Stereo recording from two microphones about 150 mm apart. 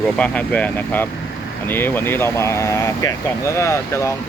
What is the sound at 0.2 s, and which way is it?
Speech, 10° left (ahead or behind).